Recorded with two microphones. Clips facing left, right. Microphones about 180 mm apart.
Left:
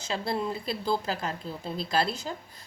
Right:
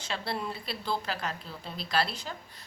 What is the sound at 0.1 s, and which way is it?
Speech, 25° left (ahead or behind).